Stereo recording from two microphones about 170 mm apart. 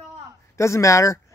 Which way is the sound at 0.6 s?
15° left (ahead or behind).